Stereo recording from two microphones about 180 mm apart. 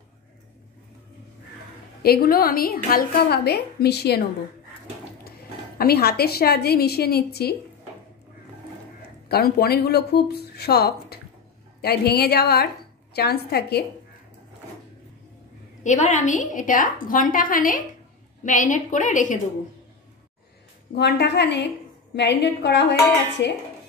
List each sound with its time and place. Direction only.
2.0 s a woman's voice: 55° left (ahead or behind)
5.8 s a woman's voice: 60° left (ahead or behind)
9.3 s a woman's voice: 60° left (ahead or behind)
15.8 s a woman's voice: 40° left (ahead or behind)
20.9 s a woman's voice: 70° left (ahead or behind)